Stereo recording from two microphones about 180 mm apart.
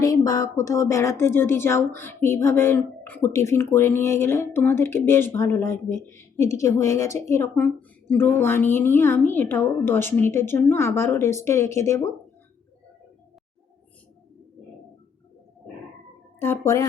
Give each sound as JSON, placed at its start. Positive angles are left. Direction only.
{"t": 0.0, "sound": "speech", "side_deg": 20}
{"t": 16.4, "sound": "speech", "side_deg": 15}